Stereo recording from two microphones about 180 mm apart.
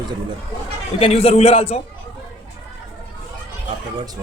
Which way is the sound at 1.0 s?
35° left (ahead or behind).